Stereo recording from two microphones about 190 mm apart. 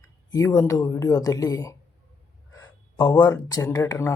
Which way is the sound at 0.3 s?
15° left (ahead or behind).